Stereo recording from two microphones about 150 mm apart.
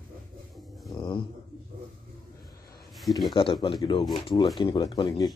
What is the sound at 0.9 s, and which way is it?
Speech, 30° left (ahead or behind).